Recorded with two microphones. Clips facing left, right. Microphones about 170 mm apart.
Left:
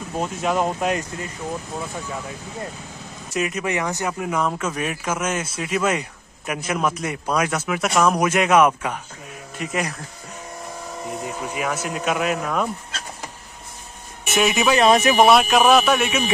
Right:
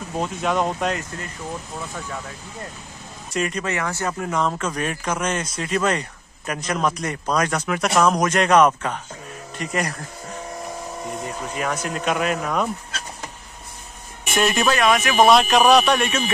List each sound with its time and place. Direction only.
0.2 s speech: 5° left (ahead or behind)
0.9 s speech: 20° left (ahead or behind)
3.3 s speech: 5° left (ahead or behind)
11.1 s speech: 5° left (ahead or behind)
14.3 s speech: 5° left (ahead or behind)
14.8 s speech: 25° left (ahead or behind)
15.1 s speech: 5° left (ahead or behind)